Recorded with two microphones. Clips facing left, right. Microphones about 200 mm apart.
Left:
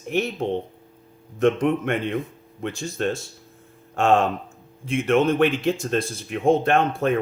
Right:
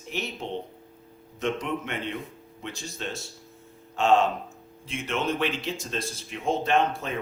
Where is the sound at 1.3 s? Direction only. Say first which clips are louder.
Left 9 dB; 55° left (ahead or behind).